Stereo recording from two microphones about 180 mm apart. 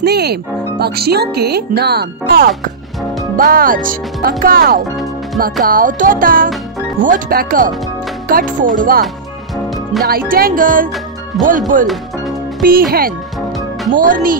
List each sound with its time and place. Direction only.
0.0 s speech: 65° right (ahead or behind)
10.0 s speech: 55° right (ahead or behind)
11.9 s music: centre (ahead or behind)
13.9 s speech: 50° right (ahead or behind)